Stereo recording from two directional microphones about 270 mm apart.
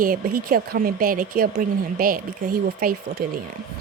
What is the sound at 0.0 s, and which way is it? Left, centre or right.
Speech, right.